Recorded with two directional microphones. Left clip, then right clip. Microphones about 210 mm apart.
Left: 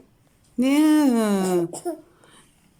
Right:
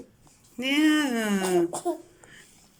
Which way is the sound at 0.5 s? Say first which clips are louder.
Left 4 dB; 20° left (ahead or behind).